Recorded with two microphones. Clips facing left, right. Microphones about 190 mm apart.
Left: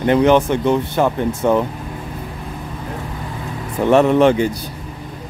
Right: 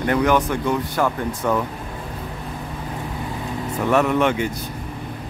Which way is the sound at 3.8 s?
30° left (ahead or behind).